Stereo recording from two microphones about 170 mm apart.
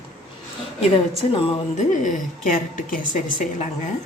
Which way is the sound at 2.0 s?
50° left (ahead or behind).